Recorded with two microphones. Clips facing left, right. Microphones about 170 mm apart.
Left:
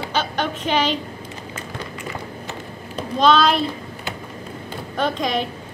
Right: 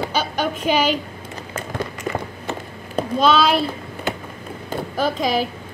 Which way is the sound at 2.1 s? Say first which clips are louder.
Right 4 dB; 50° right (ahead or behind).